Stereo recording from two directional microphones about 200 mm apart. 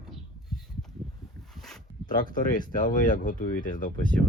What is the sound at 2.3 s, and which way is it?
Speech, 45° left (ahead or behind).